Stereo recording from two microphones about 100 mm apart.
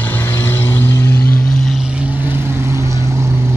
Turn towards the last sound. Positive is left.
turn(degrees=-30)  # may be behind; listen again after turning